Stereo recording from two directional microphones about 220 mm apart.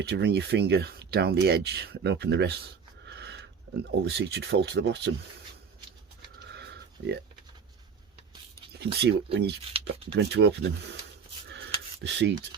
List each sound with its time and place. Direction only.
0.0 s speech: 50° right (ahead or behind)
3.1 s a sound: 50° right (ahead or behind)
4.0 s speech: 50° right (ahead or behind)
7.0 s speech: 60° right (ahead or behind)
8.8 s speech: 50° right (ahead or behind)
12.0 s speech: 50° right (ahead or behind)